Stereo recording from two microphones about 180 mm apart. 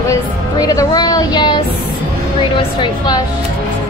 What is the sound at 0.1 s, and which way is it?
Speech, 20° left (ahead or behind).